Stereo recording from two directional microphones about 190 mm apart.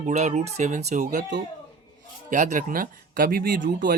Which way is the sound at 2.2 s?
40° right (ahead or behind).